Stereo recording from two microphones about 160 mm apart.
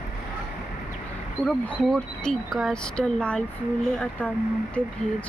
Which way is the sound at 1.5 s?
5° left (ahead or behind).